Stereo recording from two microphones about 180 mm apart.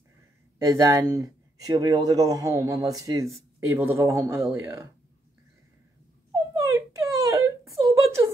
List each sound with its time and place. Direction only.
0.7 s speech: 15° right (ahead or behind)
6.3 s whimper: 15° right (ahead or behind)